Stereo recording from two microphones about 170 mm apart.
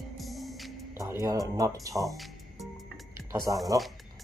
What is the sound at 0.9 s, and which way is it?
Speech, 15° right (ahead or behind).